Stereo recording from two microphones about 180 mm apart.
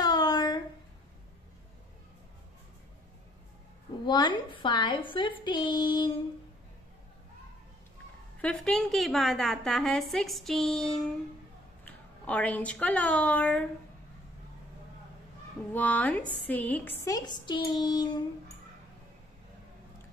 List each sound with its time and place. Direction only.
0.0 s a sound: 20° left (ahead or behind)
4.0 s a woman's voice: 25° left (ahead or behind)
8.4 s a woman's voice: 5° left (ahead or behind)
15.7 s a woman's voice: 10° left (ahead or behind); by 18.2 s 25° left (ahead or behind)